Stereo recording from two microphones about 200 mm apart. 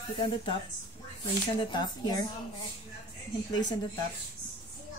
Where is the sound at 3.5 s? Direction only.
20° left (ahead or behind).